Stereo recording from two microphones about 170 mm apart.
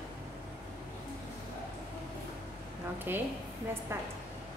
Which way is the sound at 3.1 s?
10° right (ahead or behind).